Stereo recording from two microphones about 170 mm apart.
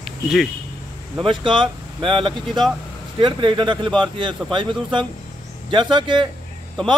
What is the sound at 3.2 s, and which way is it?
A man's voice, 30° right (ahead or behind).